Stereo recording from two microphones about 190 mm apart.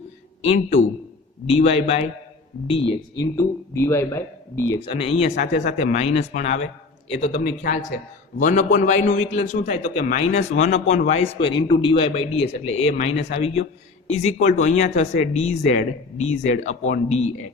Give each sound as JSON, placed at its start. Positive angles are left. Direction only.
{"t": 0.4, "sound": "a man's voice", "side_deg": 35}
{"t": 3.3, "sound": "speech", "side_deg": 15}
{"t": 4.9, "sound": "a man's voice", "side_deg": 30}